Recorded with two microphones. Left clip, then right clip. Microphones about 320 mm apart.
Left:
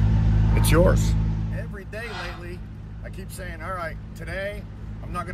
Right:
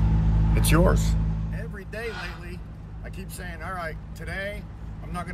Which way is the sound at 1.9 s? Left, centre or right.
Centre.